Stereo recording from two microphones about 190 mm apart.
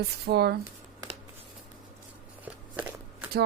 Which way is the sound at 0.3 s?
60° right (ahead or behind).